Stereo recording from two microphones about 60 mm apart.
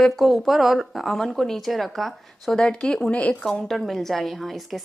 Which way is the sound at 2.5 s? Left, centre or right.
Centre.